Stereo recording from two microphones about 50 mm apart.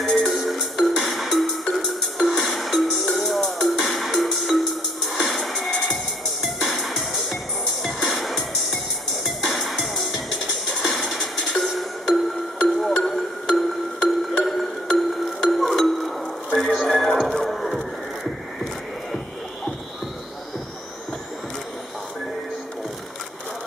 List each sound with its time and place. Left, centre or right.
0.0 s music: centre